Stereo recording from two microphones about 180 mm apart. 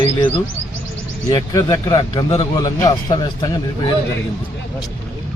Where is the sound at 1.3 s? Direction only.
20° left (ahead or behind).